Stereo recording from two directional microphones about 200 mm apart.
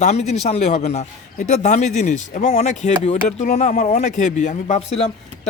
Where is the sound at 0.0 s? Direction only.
35° left (ahead or behind).